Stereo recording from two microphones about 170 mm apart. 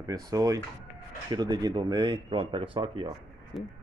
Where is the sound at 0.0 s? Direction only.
20° right (ahead or behind).